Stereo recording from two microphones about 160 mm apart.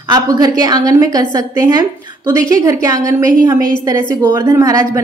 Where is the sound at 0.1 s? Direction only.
25° right (ahead or behind).